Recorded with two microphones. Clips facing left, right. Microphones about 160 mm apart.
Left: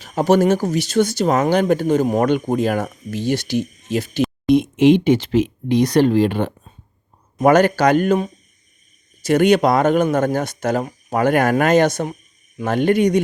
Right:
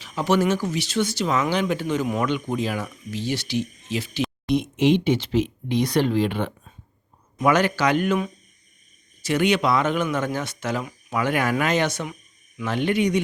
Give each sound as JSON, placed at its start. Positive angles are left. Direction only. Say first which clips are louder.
{"t": 0.0, "sound": "speech", "louder": "left 6 dB", "side_deg": 45}